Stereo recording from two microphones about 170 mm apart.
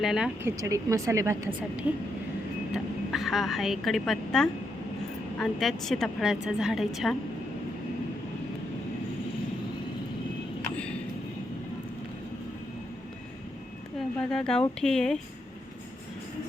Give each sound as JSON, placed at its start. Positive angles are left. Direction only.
{"t": 0.0, "sound": "a woman's voice", "side_deg": -5}
{"t": 0.4, "sound": "speech", "side_deg": -20}
{"t": 2.7, "sound": "a woman's voice", "side_deg": 0}
{"t": 14.2, "sound": "a woman's voice", "side_deg": 5}